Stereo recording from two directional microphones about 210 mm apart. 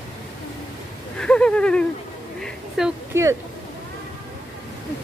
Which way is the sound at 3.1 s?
10° right (ahead or behind).